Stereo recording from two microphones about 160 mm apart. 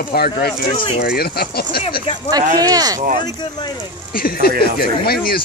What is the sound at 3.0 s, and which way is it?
Speech, 55° right (ahead or behind).